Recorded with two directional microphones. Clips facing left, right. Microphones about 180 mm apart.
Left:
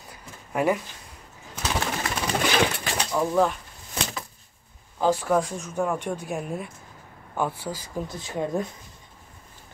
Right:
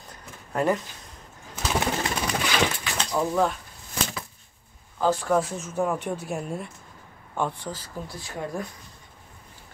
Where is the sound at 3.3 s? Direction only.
Centre (ahead or behind).